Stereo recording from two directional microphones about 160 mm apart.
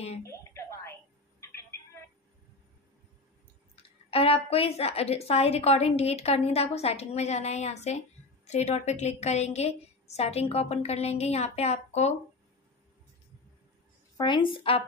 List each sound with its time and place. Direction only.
0.2 s a sound: 15° left (ahead or behind)
3.7 s a woman's voice: 35° left (ahead or behind)
14.1 s a woman's voice: 30° left (ahead or behind)